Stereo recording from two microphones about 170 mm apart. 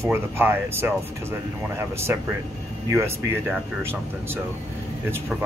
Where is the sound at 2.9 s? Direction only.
15° right (ahead or behind).